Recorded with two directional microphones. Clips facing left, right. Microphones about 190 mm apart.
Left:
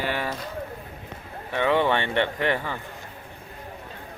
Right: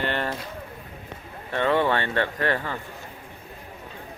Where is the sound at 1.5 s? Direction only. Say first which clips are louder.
Even; 15° left (ahead or behind).